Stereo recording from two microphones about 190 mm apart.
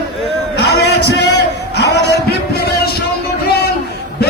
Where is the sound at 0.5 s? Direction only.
60° left (ahead or behind).